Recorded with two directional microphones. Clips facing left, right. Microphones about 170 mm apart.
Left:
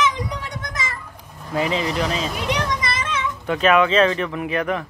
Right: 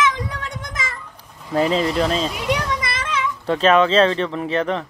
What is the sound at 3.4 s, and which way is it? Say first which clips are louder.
Speech: right 2 dB; 30° right (ahead or behind).